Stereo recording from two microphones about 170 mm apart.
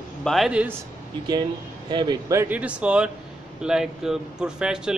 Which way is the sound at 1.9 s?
25° right (ahead or behind).